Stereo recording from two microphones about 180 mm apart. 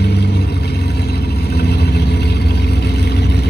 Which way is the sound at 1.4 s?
65° left (ahead or behind).